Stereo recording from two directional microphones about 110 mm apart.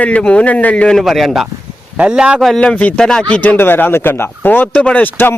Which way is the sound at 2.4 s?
5° left (ahead or behind).